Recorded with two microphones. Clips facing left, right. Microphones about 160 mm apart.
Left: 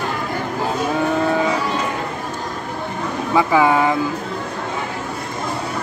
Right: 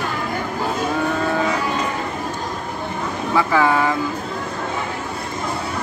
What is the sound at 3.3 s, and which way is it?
Speech, 15° left (ahead or behind).